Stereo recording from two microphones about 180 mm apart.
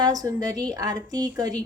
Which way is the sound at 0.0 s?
20° right (ahead or behind).